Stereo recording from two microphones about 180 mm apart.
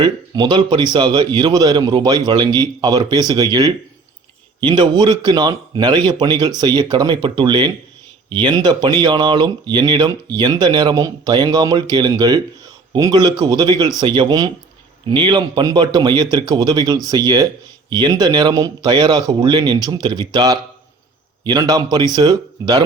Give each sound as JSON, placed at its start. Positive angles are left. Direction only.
{"t": 0.0, "sound": "a man's voice", "side_deg": -25}